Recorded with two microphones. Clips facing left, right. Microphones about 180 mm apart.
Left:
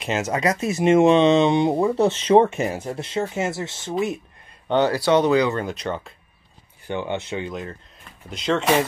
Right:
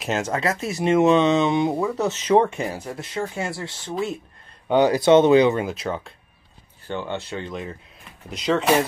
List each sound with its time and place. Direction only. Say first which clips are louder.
0.0 s speech: even; centre (ahead or behind)
0.3 s speech: left 2 dB; 15° left (ahead or behind)
4.6 s speech: right 3 dB; 15° right (ahead or behind)
5.6 s speech: right 1 dB; centre (ahead or behind)
6.9 s speech: left 2 dB; 15° left (ahead or behind)
7.5 s speech: even; centre (ahead or behind)